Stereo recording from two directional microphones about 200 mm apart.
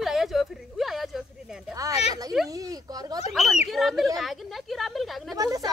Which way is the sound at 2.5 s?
15° right (ahead or behind).